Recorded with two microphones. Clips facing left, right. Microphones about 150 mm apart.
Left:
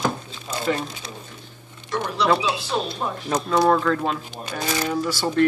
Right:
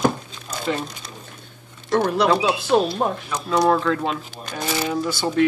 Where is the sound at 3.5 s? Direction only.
Centre (ahead or behind).